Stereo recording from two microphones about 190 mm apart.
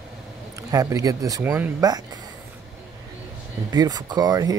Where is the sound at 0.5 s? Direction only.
20° right (ahead or behind).